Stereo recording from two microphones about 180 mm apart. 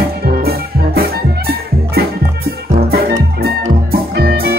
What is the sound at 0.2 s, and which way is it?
Music, 55° right (ahead or behind).